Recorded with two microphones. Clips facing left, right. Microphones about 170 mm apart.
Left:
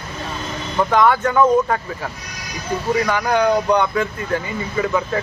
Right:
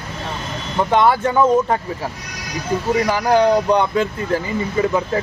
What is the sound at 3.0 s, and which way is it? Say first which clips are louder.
Speech: right 4 dB; 30° right (ahead or behind).